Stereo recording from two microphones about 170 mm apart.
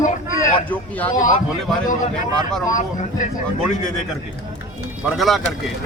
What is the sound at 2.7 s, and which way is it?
Speech, 50° left (ahead or behind).